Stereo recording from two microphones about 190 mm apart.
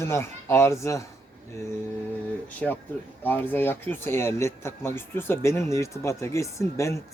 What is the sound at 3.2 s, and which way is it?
Speech, 10° left (ahead or behind).